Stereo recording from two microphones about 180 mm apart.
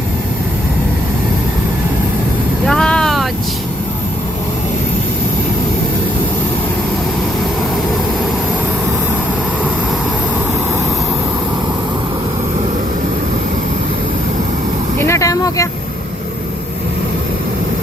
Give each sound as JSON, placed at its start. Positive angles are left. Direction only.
{"t": 2.6, "sound": "vehicle", "side_deg": 5}
{"t": 14.9, "sound": "vehicle", "side_deg": 15}